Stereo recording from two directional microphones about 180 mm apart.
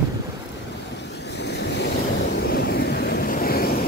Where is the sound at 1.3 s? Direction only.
70° left (ahead or behind).